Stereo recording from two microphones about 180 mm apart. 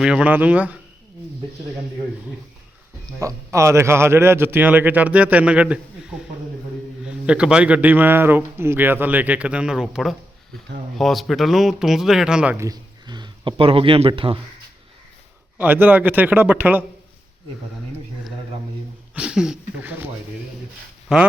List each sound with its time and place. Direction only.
0.0 s a man's voice: 5° right (ahead or behind)
3.2 s a man's voice: 15° right (ahead or behind)
12.6 s speech: 20° right (ahead or behind)
15.5 s a man's voice: 10° right (ahead or behind)
19.1 s a man's voice: 5° right (ahead or behind)
21.1 s speech: 5° right (ahead or behind)